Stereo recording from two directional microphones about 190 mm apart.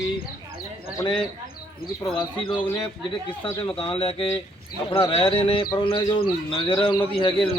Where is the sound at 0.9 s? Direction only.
25° left (ahead or behind).